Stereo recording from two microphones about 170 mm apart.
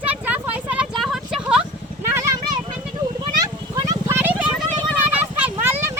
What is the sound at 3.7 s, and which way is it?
Vehicle, 20° right (ahead or behind).